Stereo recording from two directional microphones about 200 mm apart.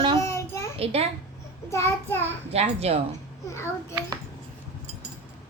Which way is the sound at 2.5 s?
30° right (ahead or behind).